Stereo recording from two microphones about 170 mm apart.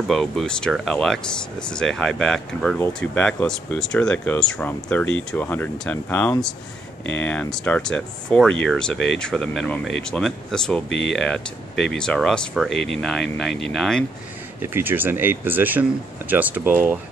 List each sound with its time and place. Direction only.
0.1 s speech: 5° left (ahead or behind)
14.6 s speech: 10° right (ahead or behind)